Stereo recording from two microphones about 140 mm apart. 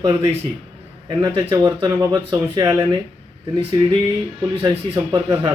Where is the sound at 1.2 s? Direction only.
25° right (ahead or behind).